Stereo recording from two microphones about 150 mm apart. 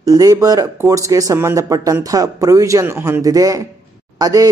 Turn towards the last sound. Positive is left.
turn(degrees=-25)  # may be behind; listen again after turning